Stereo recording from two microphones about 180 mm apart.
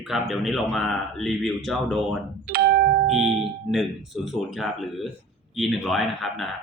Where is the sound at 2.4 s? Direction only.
55° right (ahead or behind).